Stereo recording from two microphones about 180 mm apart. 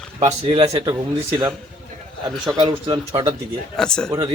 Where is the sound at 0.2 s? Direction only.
35° right (ahead or behind).